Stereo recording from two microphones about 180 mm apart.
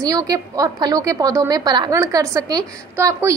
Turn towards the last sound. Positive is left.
turn(degrees=-15)  # may be behind; listen again after turning